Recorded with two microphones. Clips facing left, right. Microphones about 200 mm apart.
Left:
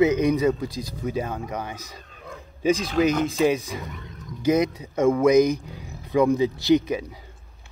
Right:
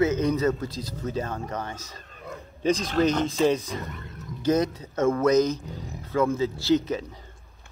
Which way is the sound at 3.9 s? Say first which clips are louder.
Even; centre (ahead or behind).